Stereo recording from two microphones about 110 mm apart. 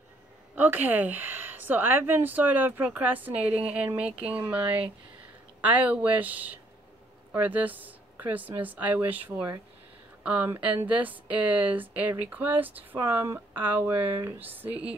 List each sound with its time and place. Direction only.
0.6 s a woman's voice: 15° right (ahead or behind)